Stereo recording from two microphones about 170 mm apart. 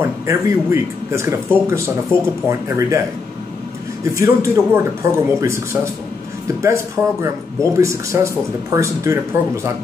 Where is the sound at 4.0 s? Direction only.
20° right (ahead or behind).